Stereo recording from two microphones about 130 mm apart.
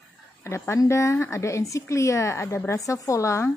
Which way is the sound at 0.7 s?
20° left (ahead or behind).